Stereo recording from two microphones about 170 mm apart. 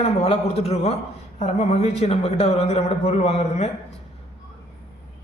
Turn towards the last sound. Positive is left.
turn(degrees=40)  # may be behind; listen again after turning